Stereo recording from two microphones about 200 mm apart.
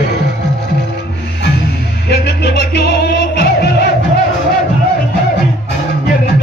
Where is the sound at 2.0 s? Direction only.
55° left (ahead or behind).